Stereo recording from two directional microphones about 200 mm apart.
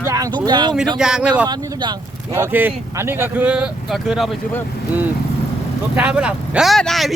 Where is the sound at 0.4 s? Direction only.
20° right (ahead or behind).